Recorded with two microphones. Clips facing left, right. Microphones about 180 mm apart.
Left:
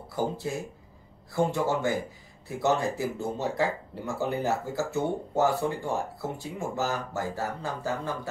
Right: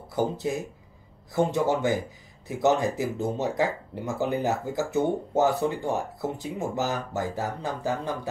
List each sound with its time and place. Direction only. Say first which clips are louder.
0.1 s speech: right 3 dB; 20° right (ahead or behind)